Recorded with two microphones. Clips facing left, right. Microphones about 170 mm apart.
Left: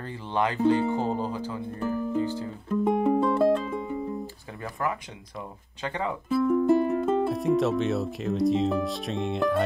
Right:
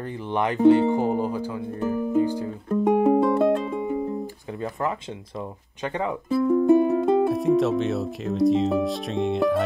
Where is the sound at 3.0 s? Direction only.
25° right (ahead or behind).